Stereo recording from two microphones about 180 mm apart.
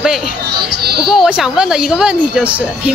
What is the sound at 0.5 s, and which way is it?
Speech, 60° right (ahead or behind).